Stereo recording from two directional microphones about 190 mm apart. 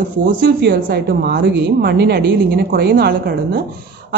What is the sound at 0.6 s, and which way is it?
A woman's voice, 60° right (ahead or behind).